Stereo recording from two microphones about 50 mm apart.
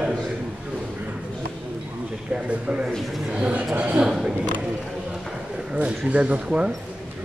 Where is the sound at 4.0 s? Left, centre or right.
Centre.